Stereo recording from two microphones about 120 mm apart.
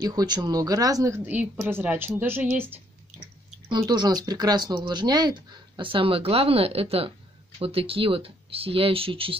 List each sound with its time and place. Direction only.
0.0 s speech: 35° right (ahead or behind)
1.2 s a woman's voice: 15° right (ahead or behind)
3.6 s speech: 35° right (ahead or behind)